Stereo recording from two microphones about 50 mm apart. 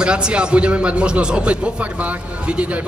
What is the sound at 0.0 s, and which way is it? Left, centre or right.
A man's voice, centre.